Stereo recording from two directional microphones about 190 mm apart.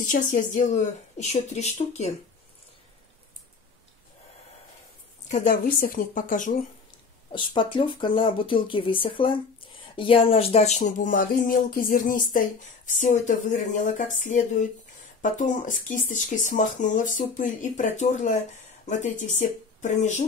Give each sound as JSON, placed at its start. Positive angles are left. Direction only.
{"t": 0.0, "sound": "speech", "side_deg": 40}
{"t": 5.3, "sound": "speech", "side_deg": 45}
{"t": 7.3, "sound": "speech", "side_deg": 25}